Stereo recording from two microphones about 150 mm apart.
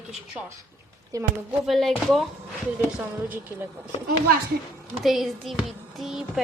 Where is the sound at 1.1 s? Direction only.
20° right (ahead or behind).